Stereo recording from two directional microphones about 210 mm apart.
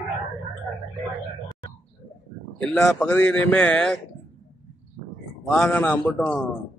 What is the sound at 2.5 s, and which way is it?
Speech, 5° left (ahead or behind).